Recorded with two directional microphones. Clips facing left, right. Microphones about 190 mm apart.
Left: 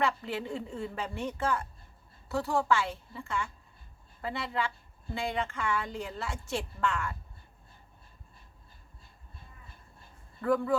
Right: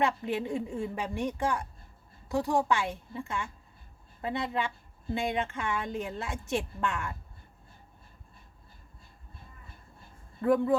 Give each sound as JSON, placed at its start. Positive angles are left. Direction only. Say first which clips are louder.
{"t": 0.0, "sound": "a woman's voice", "louder": "right 2 dB", "side_deg": -20}
{"t": 10.4, "sound": "a woman's voice", "louder": "right 3 dB", "side_deg": -20}